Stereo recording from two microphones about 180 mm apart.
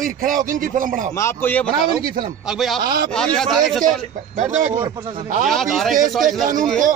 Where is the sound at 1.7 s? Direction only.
25° right (ahead or behind).